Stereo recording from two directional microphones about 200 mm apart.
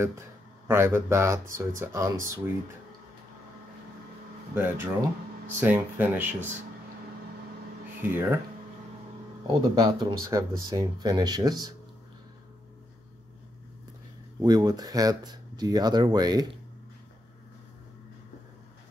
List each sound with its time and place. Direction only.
0.7 s speech: 10° right (ahead or behind)
4.6 s speech: 10° right (ahead or behind)
8.0 s speech: 10° right (ahead or behind)
9.5 s speech: 20° right (ahead or behind)
14.4 s speech: 20° right (ahead or behind)